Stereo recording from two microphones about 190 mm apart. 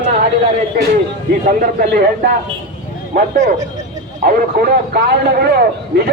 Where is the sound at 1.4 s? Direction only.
45° right (ahead or behind).